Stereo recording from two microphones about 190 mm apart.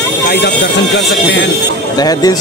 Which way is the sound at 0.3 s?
60° left (ahead or behind).